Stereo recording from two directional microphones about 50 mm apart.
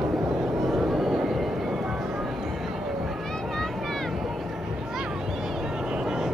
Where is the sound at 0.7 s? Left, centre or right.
Centre.